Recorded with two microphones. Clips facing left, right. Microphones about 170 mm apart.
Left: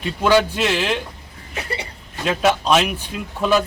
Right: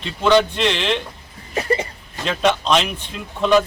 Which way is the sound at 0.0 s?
5° left (ahead or behind).